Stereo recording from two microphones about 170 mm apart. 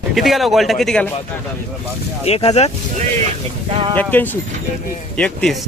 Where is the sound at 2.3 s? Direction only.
35° left (ahead or behind).